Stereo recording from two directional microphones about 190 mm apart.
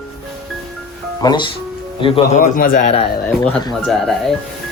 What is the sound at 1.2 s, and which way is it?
Speech, 25° left (ahead or behind).